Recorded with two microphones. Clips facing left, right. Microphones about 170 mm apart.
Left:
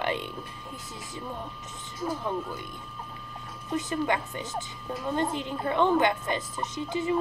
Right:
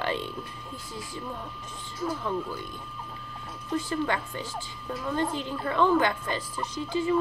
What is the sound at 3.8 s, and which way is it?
A woman's voice, 20° left (ahead or behind).